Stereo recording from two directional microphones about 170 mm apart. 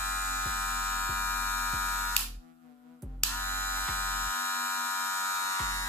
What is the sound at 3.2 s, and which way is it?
Hum, 15° left (ahead or behind).